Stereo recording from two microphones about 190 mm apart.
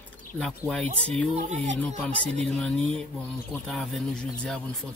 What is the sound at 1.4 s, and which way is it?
Speech, 35° right (ahead or behind).